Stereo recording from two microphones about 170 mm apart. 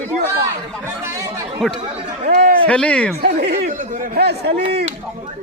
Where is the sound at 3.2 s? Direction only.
70° right (ahead or behind).